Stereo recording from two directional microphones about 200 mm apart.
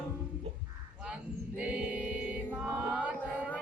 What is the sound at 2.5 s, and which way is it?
Mantra, 5° right (ahead or behind).